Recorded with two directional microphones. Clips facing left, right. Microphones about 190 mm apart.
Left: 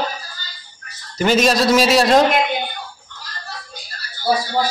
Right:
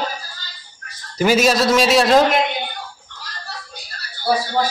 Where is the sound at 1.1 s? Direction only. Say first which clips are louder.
Even; 5° right (ahead or behind).